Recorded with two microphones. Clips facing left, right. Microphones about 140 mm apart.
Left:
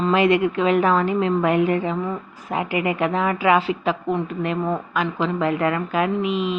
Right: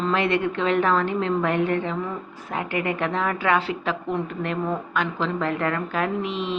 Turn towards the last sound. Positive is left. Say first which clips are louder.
# left 4 dB
turn(degrees=5)  # may be behind; listen again after turning